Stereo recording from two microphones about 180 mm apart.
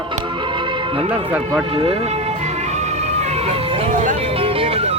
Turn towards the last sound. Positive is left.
turn(degrees=-30)  # may be behind; listen again after turning